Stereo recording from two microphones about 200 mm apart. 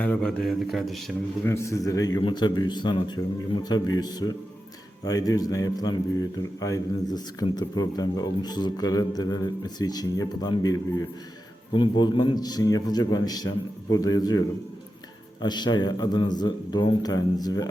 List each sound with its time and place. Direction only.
0.0 s speech: 5° left (ahead or behind)
1.5 s a man's voice: 15° left (ahead or behind)